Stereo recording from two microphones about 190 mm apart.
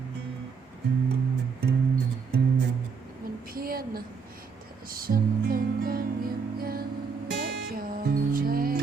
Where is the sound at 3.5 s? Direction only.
50° right (ahead or behind).